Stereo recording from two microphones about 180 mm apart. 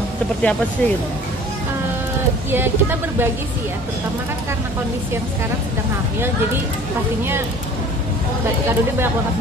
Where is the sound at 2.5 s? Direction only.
10° right (ahead or behind).